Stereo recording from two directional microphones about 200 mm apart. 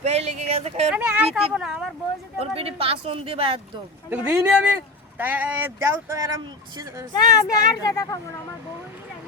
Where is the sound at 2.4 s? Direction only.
30° right (ahead or behind).